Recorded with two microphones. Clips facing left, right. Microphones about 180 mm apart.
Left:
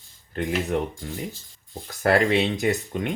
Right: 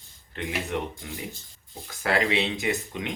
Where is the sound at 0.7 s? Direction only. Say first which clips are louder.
Left 4 dB; 45° left (ahead or behind).